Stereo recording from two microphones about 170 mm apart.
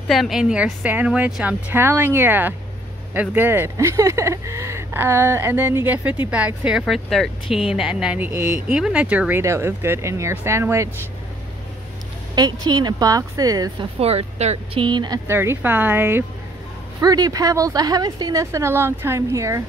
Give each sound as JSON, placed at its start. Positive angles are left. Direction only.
{"t": 0.1, "sound": "speech", "side_deg": 0}
{"t": 12.4, "sound": "a woman's voice", "side_deg": -25}
{"t": 13.9, "sound": "speech", "side_deg": -35}
{"t": 15.2, "sound": "a woman's voice", "side_deg": -15}